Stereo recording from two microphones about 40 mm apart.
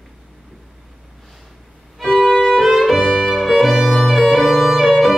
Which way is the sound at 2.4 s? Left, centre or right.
Centre.